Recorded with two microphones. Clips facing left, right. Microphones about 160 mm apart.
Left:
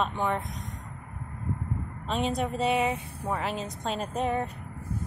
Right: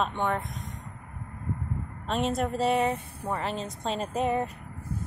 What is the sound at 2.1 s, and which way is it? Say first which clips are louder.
A woman's voice: right 1 dB; centre (ahead or behind).